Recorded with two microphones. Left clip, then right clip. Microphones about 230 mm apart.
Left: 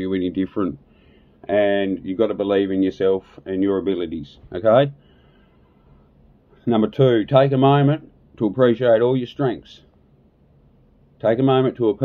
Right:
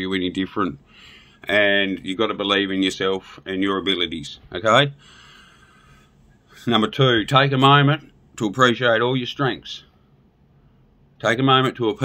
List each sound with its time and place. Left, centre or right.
0.0 s speech: centre
6.5 s speech: centre
11.1 s speech: centre